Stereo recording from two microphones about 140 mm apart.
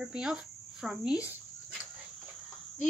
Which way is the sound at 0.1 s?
5° right (ahead or behind).